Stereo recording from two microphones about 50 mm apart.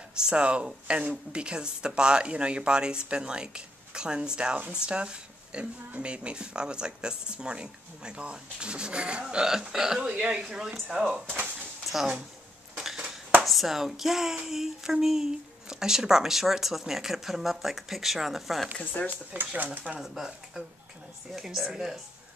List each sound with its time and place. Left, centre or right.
0.2 s a woman's voice: right
10.0 s a woman's voice: right
11.8 s a sound: centre
13.4 s a woman's voice: centre
18.8 s speech: left
19.3 s speech: right
21.3 s a woman's voice: centre